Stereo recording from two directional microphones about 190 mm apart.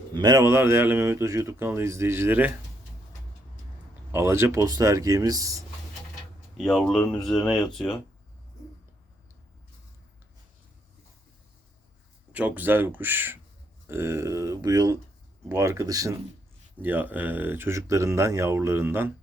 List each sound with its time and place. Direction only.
0.1 s speech: 20° right (ahead or behind)
4.1 s speech: 15° right (ahead or behind)
6.6 s speech: centre (ahead or behind)
12.3 s speech: 10° right (ahead or behind)